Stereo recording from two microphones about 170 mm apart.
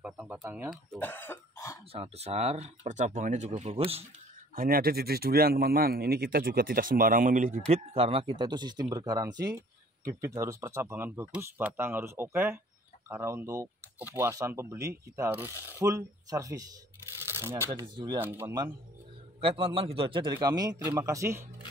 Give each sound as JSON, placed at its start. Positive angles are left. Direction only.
{"t": 0.0, "sound": "speech", "side_deg": -5}
{"t": 0.9, "sound": "cough", "side_deg": 10}
{"t": 1.9, "sound": "speech", "side_deg": -35}
{"t": 4.6, "sound": "a man's voice", "side_deg": -60}
{"t": 17.6, "sound": "a man's voice", "side_deg": -25}
{"t": 18.2, "sound": "speech", "side_deg": -10}
{"t": 19.4, "sound": "a man's voice", "side_deg": -30}